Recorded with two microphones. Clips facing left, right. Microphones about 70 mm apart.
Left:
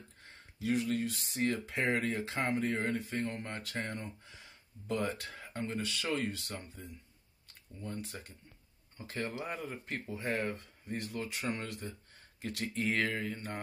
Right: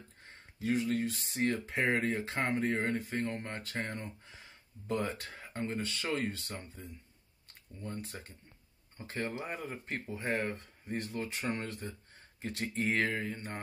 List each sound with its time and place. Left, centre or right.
0.6 s speech: right
7.8 s speech: right